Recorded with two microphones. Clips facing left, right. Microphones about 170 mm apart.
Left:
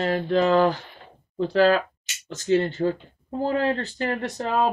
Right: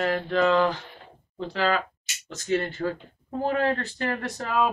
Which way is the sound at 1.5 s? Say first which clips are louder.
Left 7 dB; 45° left (ahead or behind).